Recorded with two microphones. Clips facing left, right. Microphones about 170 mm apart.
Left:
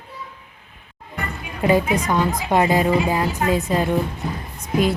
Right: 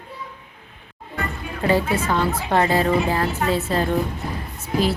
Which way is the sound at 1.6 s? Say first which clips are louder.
Left 2 dB; 15° left (ahead or behind).